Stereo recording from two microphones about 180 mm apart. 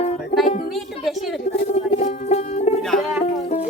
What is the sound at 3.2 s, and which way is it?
Music, 35° left (ahead or behind).